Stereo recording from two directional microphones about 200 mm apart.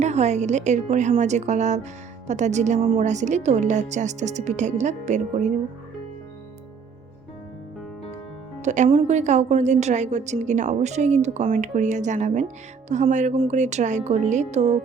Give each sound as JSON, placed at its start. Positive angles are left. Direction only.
{"t": 0.0, "sound": "a woman's voice", "side_deg": -35}
{"t": 8.6, "sound": "a woman's voice", "side_deg": -35}